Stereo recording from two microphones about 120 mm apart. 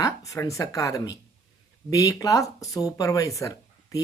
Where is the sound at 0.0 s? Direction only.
30° left (ahead or behind).